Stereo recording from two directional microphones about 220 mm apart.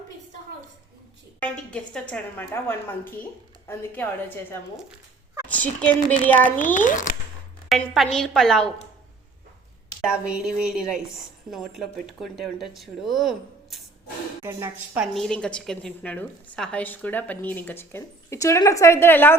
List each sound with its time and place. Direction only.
1.4 s a woman's voice: 5° left (ahead or behind)
5.5 s a woman's voice: 5° left (ahead or behind)
6.7 s speech: 35° left (ahead or behind)
7.7 s speech: centre (ahead or behind)
10.0 s a woman's voice: 5° right (ahead or behind)